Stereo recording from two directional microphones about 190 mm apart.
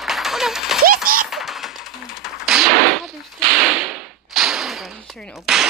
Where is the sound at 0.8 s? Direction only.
50° right (ahead or behind).